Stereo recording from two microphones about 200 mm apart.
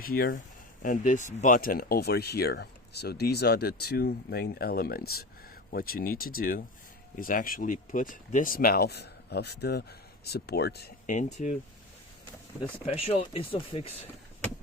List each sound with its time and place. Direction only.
0.0 s speech: 45° left (ahead or behind)
11.1 s speech: 35° left (ahead or behind)
12.9 s speech: 30° left (ahead or behind)